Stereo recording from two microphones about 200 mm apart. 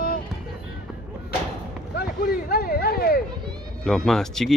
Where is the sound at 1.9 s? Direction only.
50° left (ahead or behind).